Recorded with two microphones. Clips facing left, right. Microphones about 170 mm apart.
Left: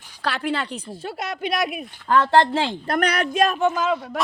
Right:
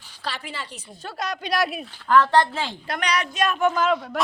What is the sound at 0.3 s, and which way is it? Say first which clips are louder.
Speech: left 8 dB; 65° left (ahead or behind).